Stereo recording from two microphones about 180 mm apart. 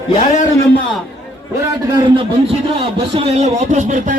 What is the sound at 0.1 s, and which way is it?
Speech, 40° left (ahead or behind).